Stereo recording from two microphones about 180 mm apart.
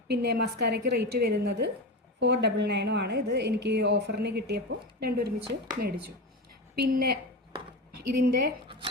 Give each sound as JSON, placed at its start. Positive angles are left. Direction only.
{"t": 0.1, "sound": "a woman's voice", "side_deg": -65}
{"t": 6.7, "sound": "a woman's voice", "side_deg": -60}
{"t": 8.6, "sound": "speech", "side_deg": -30}